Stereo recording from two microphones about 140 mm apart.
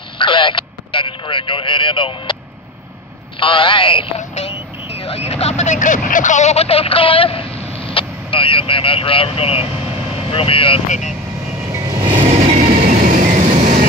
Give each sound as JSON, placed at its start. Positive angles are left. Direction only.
{"t": 0.2, "sound": "speech", "side_deg": 35}
{"t": 3.3, "sound": "speech", "side_deg": 40}
{"t": 4.2, "sound": "vehicle", "side_deg": 50}
{"t": 5.3, "sound": "speech", "side_deg": 50}
{"t": 11.7, "sound": "vehicle", "side_deg": -30}
{"t": 12.2, "sound": "train", "side_deg": -45}
{"t": 12.8, "sound": "vehicle", "side_deg": -65}